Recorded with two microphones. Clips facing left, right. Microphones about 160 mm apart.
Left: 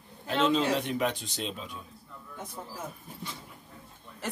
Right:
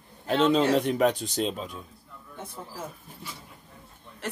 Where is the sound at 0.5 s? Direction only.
45° right (ahead or behind).